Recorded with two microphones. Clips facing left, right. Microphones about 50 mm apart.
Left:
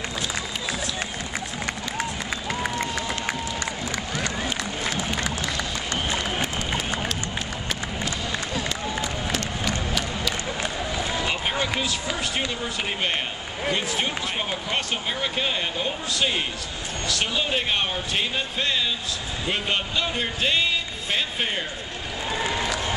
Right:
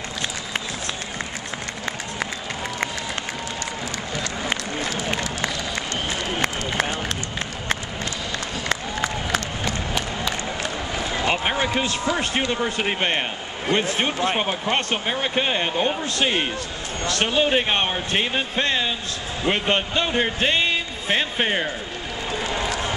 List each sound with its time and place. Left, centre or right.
9.7 s crowd: right
11.1 s a sound: right
13.7 s speech: right